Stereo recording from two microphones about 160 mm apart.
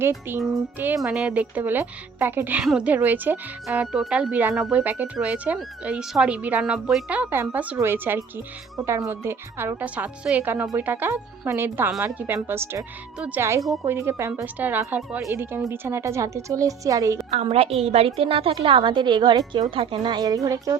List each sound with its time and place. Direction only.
0.3 s a woman's voice: 15° right (ahead or behind)
17.3 s a woman's voice: 40° right (ahead or behind); by 20.7 s 20° right (ahead or behind)